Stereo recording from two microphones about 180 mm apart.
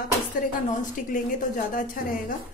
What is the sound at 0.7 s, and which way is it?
A woman's voice, 45° left (ahead or behind).